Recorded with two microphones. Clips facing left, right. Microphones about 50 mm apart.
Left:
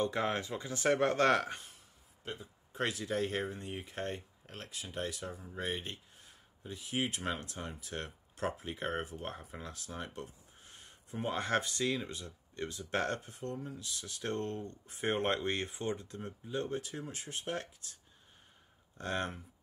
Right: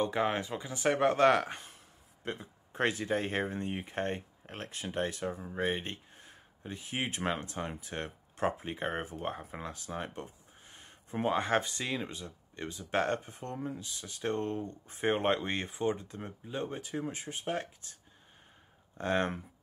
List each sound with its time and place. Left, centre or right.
0.0 s speech: centre
2.2 s speech: right
9.4 s a sound: right
11.2 s speech: centre
13.3 s speech: right
13.9 s speech: centre
18.9 s speech: right